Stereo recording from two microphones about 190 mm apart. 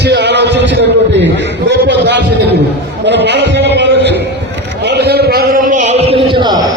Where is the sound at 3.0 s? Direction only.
65° right (ahead or behind).